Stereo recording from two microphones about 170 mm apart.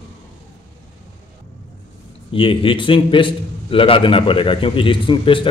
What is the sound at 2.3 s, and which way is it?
A man's voice, 30° left (ahead or behind).